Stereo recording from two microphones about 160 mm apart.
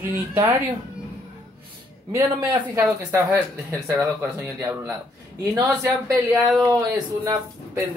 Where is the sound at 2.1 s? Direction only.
10° right (ahead or behind).